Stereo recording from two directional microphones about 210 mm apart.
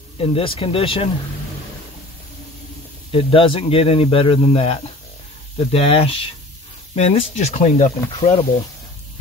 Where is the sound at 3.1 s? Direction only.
25° left (ahead or behind).